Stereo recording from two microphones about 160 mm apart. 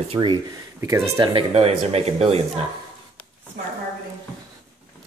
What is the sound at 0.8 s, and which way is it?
Speech, 20° right (ahead or behind).